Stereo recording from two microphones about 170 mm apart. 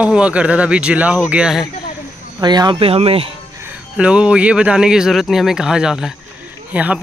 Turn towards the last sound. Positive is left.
turn(degrees=-10)  # may be behind; listen again after turning